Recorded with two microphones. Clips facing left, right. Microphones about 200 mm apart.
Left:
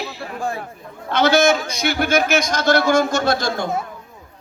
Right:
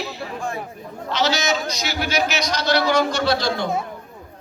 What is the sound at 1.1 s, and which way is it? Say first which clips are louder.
A man's voice: left 6 dB; 55° left (ahead or behind).